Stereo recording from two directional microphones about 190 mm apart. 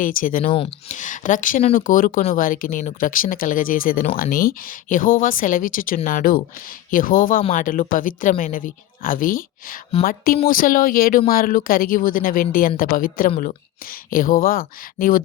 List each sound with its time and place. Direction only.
0.0 s speech: 45° left (ahead or behind)